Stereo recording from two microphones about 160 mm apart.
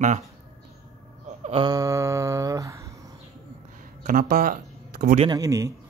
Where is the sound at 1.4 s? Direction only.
30° right (ahead or behind).